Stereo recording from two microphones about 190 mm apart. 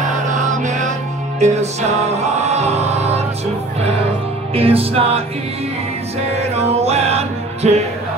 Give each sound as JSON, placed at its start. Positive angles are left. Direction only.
{"t": 0.5, "sound": "music", "side_deg": -40}
{"t": 4.6, "sound": "music", "side_deg": -30}
{"t": 6.5, "sound": "music", "side_deg": -35}